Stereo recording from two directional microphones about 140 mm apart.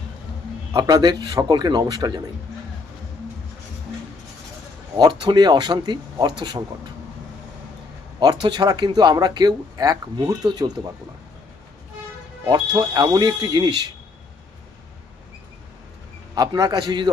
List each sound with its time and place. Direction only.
0.7 s speech: 25° right (ahead or behind)
4.9 s speech: 30° right (ahead or behind)
8.2 s speech: 30° right (ahead or behind)
12.5 s speech: 30° right (ahead or behind)
16.3 s speech: 30° right (ahead or behind)